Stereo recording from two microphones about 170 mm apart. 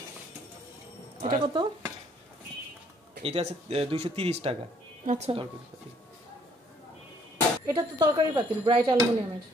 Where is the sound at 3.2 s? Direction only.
35° right (ahead or behind).